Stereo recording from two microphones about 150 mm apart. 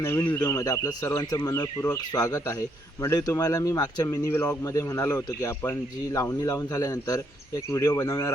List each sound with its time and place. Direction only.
0.0 s speech: 15° left (ahead or behind)